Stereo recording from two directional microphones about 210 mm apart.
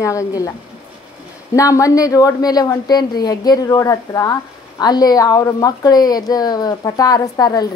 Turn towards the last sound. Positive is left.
turn(degrees=20)  # may be behind; listen again after turning